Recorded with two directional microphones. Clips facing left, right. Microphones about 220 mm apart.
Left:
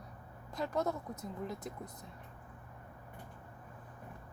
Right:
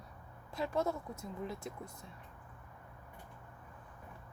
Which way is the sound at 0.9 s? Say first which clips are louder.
Left 1 dB; 20° left (ahead or behind).